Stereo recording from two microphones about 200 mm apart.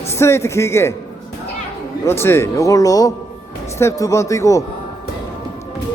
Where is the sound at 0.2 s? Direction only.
15° left (ahead or behind).